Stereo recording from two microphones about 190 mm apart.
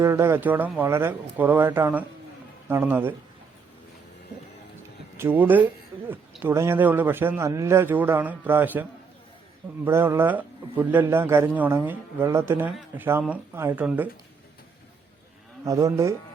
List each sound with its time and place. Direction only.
0.0 s a man's voice: 15° right (ahead or behind)
5.1 s a man's voice: 10° right (ahead or behind)
15.6 s a man's voice: 15° right (ahead or behind)